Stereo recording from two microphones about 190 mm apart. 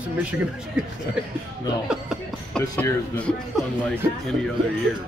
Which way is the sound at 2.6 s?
15° left (ahead or behind).